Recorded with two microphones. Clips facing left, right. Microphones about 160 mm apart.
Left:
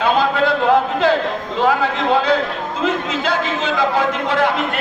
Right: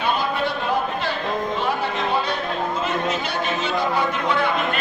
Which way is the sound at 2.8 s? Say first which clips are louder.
Left 4 dB; 90° left.